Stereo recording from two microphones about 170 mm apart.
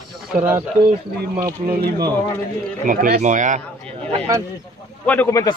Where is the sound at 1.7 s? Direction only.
65° right (ahead or behind).